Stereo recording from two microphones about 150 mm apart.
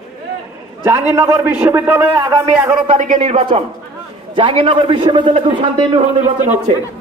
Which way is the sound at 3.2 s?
40° right (ahead or behind).